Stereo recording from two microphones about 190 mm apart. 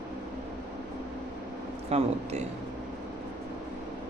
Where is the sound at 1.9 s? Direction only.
35° right (ahead or behind).